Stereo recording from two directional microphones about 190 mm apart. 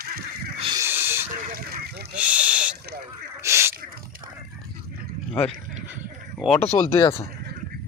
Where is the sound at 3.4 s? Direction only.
15° right (ahead or behind).